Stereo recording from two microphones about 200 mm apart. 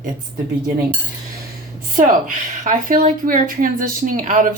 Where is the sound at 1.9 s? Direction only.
40° right (ahead or behind).